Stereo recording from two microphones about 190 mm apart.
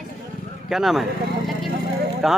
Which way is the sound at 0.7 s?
Centre (ahead or behind).